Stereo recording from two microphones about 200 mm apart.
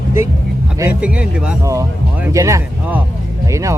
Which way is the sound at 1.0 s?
5° right (ahead or behind).